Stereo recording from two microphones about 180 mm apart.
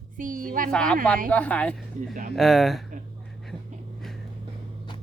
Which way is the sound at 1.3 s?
5° left (ahead or behind).